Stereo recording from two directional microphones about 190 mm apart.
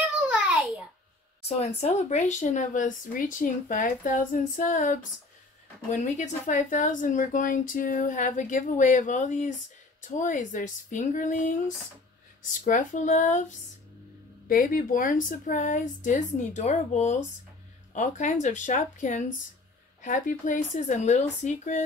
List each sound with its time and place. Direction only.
0.3 s a sound: centre (ahead or behind)
1.6 s speech: 35° left (ahead or behind)
14.5 s speech: 45° left (ahead or behind)